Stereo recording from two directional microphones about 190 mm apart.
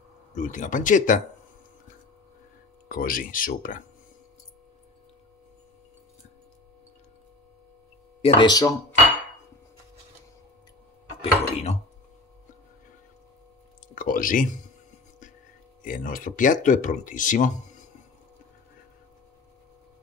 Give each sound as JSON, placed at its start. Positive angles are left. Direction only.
{"t": 0.3, "sound": "speech", "side_deg": 40}
{"t": 2.9, "sound": "speech", "side_deg": 50}
{"t": 8.2, "sound": "speech", "side_deg": 30}
{"t": 11.1, "sound": "dishes", "side_deg": 35}
{"t": 13.9, "sound": "a sound", "side_deg": 45}
{"t": 15.8, "sound": "speech", "side_deg": 45}